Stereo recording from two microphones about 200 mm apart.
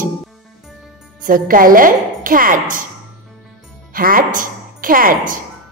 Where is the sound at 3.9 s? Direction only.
45° right (ahead or behind).